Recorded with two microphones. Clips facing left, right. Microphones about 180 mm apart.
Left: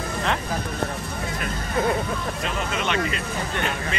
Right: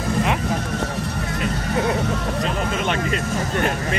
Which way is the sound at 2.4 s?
45° right (ahead or behind).